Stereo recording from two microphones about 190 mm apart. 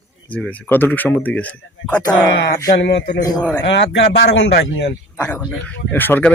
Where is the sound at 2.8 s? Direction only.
70° left (ahead or behind).